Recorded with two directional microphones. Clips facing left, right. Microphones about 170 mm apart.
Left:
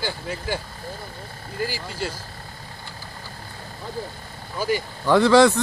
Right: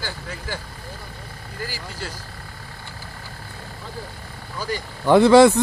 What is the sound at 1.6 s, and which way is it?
Speech, 15° left (ahead or behind).